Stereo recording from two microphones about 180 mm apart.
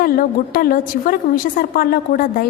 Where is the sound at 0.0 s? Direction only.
55° left (ahead or behind).